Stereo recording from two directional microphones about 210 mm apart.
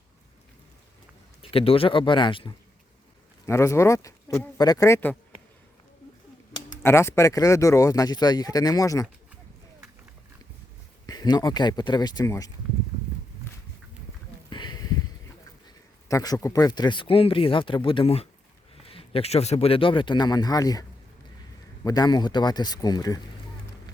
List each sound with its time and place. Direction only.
1.4 s speech: 25° left (ahead or behind); by 5.1 s 10° left (ahead or behind)
6.8 s speech: 10° left (ahead or behind)
11.0 s speech: 20° left (ahead or behind)
14.5 s a sound: 20° left (ahead or behind)
16.0 s speech: 15° left (ahead or behind)
21.8 s speech: 20° left (ahead or behind)